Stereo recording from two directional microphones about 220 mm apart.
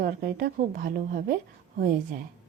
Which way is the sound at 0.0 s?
45° right (ahead or behind).